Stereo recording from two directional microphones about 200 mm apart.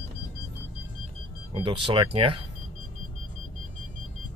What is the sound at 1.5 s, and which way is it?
Speech, 25° right (ahead or behind).